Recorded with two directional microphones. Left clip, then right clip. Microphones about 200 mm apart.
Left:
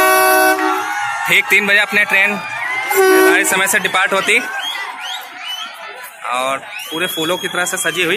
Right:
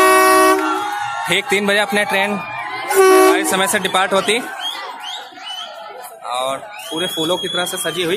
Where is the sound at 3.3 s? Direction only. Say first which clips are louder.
Left 3 dB; 10° right (ahead or behind).